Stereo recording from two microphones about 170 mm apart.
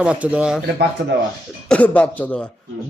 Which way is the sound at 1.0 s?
90° right.